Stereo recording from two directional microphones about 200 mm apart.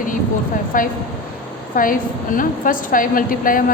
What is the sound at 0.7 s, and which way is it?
A woman's voice, 45° left (ahead or behind).